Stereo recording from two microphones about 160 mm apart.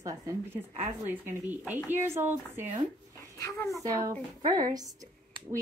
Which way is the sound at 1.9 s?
15° right (ahead or behind).